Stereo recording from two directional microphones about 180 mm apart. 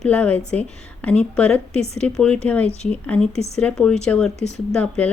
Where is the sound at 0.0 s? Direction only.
10° left (ahead or behind).